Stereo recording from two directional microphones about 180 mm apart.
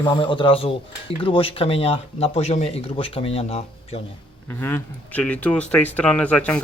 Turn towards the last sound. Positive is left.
turn(degrees=5)  # may be behind; listen again after turning